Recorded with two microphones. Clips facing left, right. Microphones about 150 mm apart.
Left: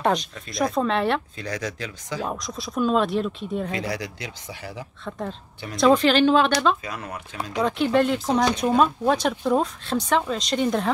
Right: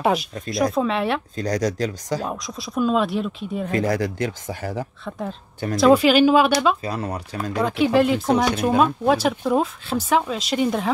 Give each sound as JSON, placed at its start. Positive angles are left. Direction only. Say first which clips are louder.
{"t": 0.0, "sound": "speech", "louder": "right 2 dB", "side_deg": -5}
{"t": 1.3, "sound": "speech", "louder": "right 8 dB", "side_deg": -40}
{"t": 2.2, "sound": "speech", "louder": "right 1 dB", "side_deg": 0}
{"t": 3.7, "sound": "speech", "louder": "right 7 dB", "side_deg": -45}
{"t": 5.8, "sound": "speech", "louder": "right 3 dB", "side_deg": -5}
{"t": 6.8, "sound": "speech", "louder": "right 6 dB", "side_deg": -35}
{"t": 7.6, "sound": "speech", "louder": "right 2 dB", "side_deg": -5}